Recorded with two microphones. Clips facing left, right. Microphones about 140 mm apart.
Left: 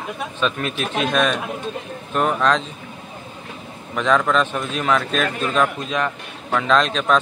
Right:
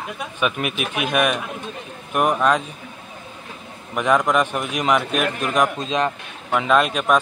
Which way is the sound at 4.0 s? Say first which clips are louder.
Even; 15° right (ahead or behind).